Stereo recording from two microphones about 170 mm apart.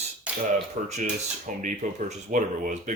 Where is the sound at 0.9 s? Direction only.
45° right (ahead or behind).